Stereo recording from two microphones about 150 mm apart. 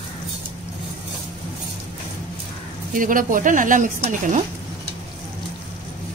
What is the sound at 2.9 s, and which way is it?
Speech, 65° right (ahead or behind).